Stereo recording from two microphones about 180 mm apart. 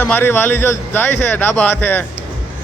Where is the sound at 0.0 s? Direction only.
10° left (ahead or behind).